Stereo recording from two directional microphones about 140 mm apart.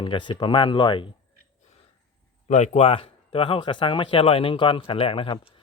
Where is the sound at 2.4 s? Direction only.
55° left (ahead or behind).